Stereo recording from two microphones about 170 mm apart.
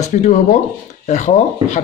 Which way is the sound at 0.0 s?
45° left (ahead or behind).